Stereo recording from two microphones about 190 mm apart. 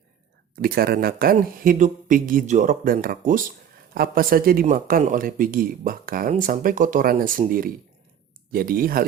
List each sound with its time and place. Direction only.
0.5 s speech: 50° right (ahead or behind)